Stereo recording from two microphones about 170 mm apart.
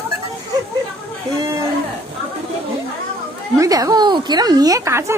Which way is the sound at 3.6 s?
20° right (ahead or behind).